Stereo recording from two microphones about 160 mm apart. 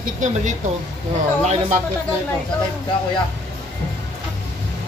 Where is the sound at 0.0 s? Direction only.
50° right (ahead or behind).